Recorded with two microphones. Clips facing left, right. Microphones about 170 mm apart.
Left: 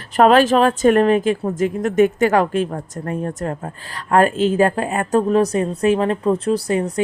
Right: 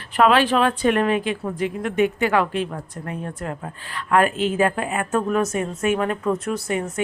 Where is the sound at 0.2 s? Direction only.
40° left (ahead or behind).